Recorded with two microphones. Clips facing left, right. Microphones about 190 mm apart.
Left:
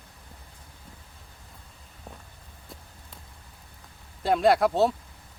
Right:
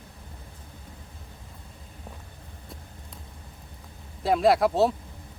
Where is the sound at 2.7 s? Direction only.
Centre (ahead or behind).